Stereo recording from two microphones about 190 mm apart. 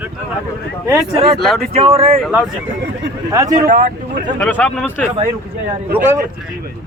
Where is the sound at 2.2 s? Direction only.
5° right (ahead or behind).